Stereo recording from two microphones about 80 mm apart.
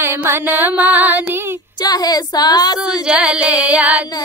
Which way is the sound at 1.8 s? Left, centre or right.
Left.